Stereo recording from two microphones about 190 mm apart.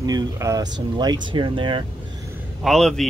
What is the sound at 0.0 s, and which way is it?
Speech, 20° right (ahead or behind).